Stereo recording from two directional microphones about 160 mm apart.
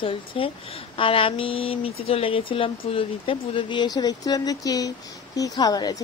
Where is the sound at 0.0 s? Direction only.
35° left (ahead or behind).